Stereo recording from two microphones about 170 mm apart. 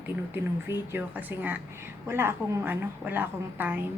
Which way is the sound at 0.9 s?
10° right (ahead or behind).